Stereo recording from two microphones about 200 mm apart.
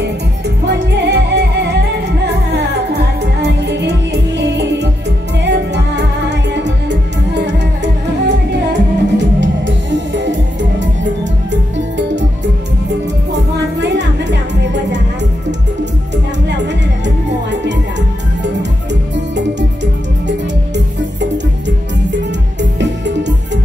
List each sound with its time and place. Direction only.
0.7 s music: 55° right (ahead or behind)
13.7 s music: 60° right (ahead or behind)
16.4 s music: 60° right (ahead or behind)